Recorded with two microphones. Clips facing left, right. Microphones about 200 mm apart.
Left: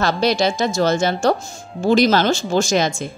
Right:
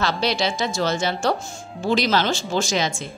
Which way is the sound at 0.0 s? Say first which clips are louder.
Left 5 dB; 45° left (ahead or behind).